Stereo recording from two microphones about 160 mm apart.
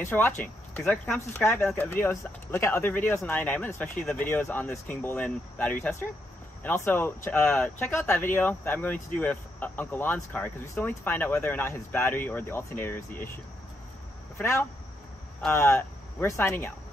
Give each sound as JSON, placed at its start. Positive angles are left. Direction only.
{"t": 0.0, "sound": "speech", "side_deg": 15}
{"t": 14.4, "sound": "speech", "side_deg": 15}